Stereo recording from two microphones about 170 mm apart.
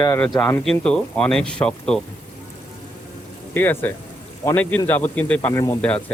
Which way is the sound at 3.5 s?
10° left (ahead or behind).